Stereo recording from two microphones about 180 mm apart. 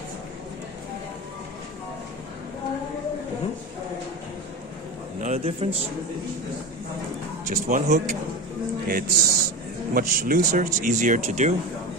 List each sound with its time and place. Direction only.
5.2 s a man's voice: 40° right (ahead or behind)
7.6 s speech: 45° right (ahead or behind)
8.8 s speech: 55° right (ahead or behind)